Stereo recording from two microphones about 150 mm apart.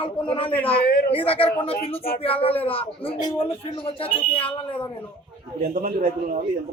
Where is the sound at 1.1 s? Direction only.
40° left (ahead or behind).